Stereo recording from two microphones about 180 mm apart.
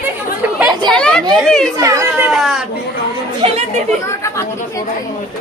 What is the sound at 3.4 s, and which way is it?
Speech, 30° right (ahead or behind).